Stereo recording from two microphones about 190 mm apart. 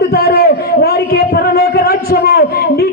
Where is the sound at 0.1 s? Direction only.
55° left (ahead or behind).